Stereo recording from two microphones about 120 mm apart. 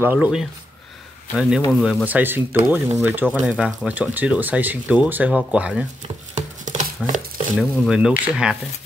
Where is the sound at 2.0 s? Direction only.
15° right (ahead or behind).